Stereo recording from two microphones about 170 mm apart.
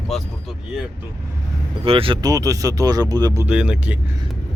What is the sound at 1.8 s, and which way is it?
Speech, 35° right (ahead or behind).